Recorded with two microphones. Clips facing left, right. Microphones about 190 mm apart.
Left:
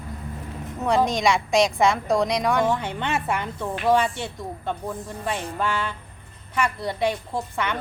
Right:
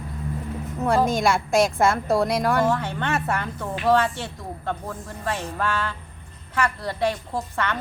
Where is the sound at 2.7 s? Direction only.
15° left (ahead or behind).